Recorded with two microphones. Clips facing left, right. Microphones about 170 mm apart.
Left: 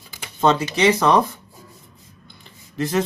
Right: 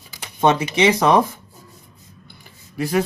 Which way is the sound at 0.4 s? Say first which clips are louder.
Right 1 dB; 15° right (ahead or behind).